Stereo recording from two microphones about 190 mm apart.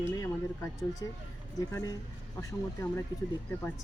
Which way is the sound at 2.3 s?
15° left (ahead or behind).